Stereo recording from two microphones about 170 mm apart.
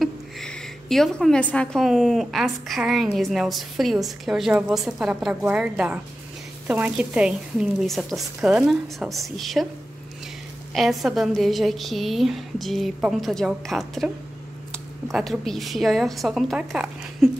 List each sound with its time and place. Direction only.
0.0 s a woman's voice: 5° left (ahead or behind)
10.7 s a woman's voice: centre (ahead or behind)